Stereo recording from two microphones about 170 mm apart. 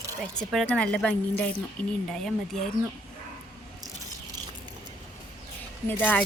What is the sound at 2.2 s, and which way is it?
Speech, 5° left (ahead or behind).